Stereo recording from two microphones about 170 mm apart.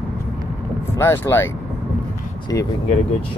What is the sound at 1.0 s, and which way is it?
Speech, 15° left (ahead or behind).